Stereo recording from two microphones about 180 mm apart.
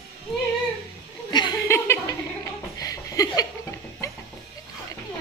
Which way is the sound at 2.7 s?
20° left (ahead or behind).